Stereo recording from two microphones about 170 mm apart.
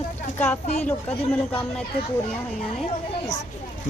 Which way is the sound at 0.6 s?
40° left (ahead or behind).